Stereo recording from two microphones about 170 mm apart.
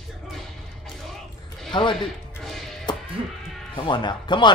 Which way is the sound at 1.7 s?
30° left (ahead or behind).